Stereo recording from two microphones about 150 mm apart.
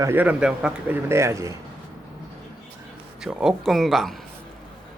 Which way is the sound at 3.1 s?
5° right (ahead or behind).